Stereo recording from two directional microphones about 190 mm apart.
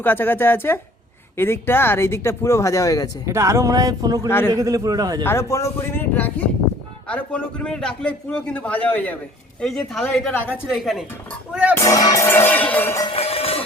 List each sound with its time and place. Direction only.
0.0 s speech: 10° left (ahead or behind)
3.2 s music: 15° right (ahead or behind)
4.3 s speech: 10° left (ahead or behind)
4.5 s music: 15° right (ahead or behind)
5.2 s a man's voice: 15° left (ahead or behind)
11.9 s speech: 20° left (ahead or behind)
13.1 s music: 30° left (ahead or behind)